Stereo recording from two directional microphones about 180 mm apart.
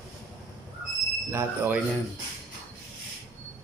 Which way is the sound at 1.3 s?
15° right (ahead or behind).